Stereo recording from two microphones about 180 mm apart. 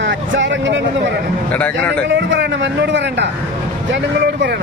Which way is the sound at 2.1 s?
90° right.